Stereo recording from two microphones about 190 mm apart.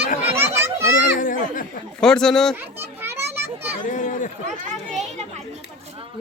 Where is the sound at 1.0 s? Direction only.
45° left (ahead or behind).